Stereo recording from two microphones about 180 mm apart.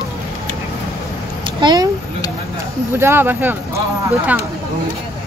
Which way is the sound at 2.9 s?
15° right (ahead or behind).